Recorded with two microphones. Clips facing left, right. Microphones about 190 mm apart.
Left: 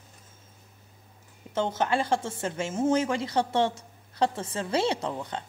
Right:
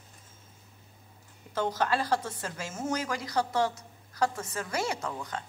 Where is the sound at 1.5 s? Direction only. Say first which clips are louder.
Left 2 dB; 25° left (ahead or behind).